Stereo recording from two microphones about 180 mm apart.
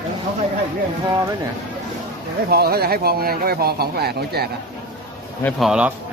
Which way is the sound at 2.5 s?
60° right (ahead or behind).